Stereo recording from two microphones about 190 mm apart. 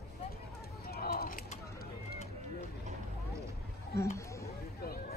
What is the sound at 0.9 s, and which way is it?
Bird, 55° left (ahead or behind).